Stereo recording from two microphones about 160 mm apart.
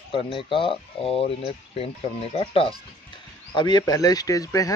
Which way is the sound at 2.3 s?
35° left (ahead or behind).